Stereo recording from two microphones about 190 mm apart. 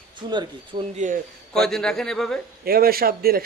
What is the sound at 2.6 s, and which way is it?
Speech, 50° right (ahead or behind).